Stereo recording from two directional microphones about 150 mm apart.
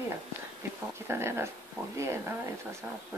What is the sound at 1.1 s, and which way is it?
Speech, 15° right (ahead or behind).